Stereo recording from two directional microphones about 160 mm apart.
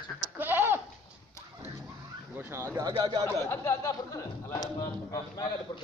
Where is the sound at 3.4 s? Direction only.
15° left (ahead or behind).